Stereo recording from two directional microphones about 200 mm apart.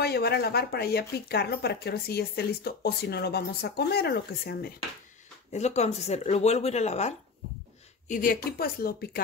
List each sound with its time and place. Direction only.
0.0 s speech: 55° left (ahead or behind)
5.5 s speech: 35° left (ahead or behind)
8.1 s speech: 45° left (ahead or behind)